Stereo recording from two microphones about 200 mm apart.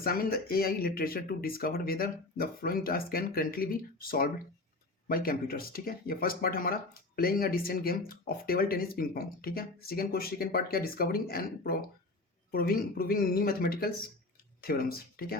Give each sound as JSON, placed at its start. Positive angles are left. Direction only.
{"t": 0.0, "sound": "speech", "side_deg": 50}